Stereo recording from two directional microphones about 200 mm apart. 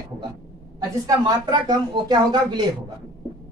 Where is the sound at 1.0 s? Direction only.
20° right (ahead or behind).